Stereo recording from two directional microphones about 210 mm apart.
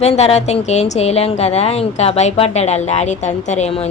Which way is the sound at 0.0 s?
30° left (ahead or behind).